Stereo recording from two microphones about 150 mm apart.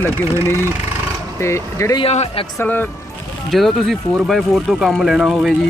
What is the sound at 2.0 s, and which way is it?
Speech, 45° left (ahead or behind).